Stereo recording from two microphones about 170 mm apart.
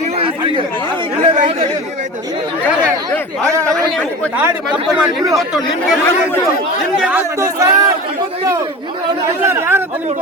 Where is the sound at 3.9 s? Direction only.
10° left (ahead or behind).